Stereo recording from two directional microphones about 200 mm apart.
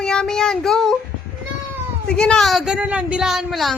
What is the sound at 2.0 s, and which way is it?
A child's voice, 5° left (ahead or behind).